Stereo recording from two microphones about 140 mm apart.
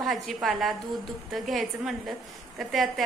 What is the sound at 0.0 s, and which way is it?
A woman's voice, centre (ahead or behind).